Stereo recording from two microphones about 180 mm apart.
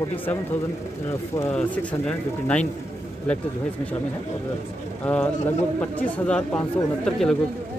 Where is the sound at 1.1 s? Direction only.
15° left (ahead or behind).